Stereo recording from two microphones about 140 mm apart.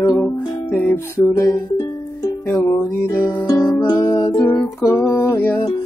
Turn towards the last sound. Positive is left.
turn(degrees=15)  # may be behind; listen again after turning